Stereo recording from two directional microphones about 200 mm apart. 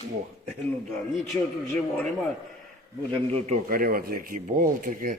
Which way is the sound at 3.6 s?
45° right (ahead or behind).